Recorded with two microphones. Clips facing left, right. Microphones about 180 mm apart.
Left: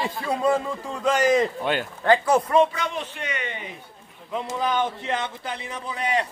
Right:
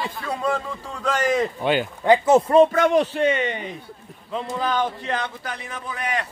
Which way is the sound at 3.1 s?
30° right (ahead or behind).